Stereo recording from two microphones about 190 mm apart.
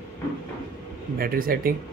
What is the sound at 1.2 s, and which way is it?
Speech, 50° right (ahead or behind).